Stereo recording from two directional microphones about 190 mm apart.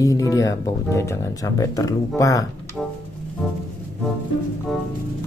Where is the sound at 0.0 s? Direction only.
15° left (ahead or behind).